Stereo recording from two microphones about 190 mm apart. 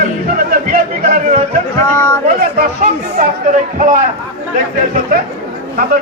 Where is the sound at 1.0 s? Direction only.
50° right (ahead or behind).